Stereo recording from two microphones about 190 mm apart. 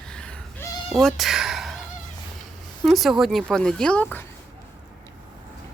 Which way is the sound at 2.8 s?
Centre (ahead or behind).